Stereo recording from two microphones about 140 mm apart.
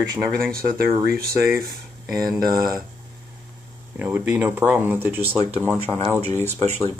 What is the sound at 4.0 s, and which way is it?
Speech, 15° right (ahead or behind).